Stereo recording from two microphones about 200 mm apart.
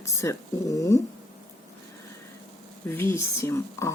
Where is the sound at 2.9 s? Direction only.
10° left (ahead or behind).